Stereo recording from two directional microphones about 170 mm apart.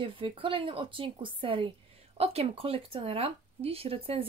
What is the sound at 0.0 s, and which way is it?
Speech, 30° right (ahead or behind).